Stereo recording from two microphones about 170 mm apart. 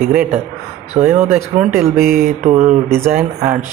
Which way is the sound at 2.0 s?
60° right (ahead or behind).